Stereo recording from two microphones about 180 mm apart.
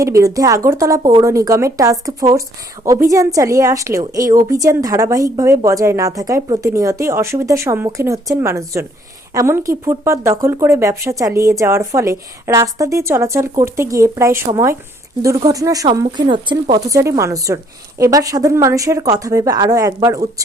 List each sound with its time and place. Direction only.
0.0 s a woman's voice: 15° right (ahead or behind)